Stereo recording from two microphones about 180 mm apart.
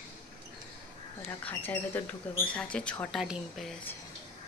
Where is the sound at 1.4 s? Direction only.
10° left (ahead or behind).